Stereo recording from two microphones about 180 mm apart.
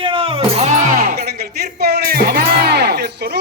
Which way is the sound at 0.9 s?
60° right (ahead or behind).